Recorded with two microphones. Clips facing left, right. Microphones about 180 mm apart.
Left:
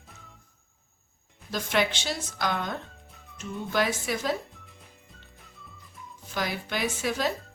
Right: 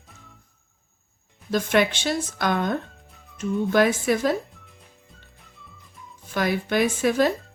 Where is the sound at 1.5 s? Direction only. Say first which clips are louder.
Right 6 dB; 55° right (ahead or behind).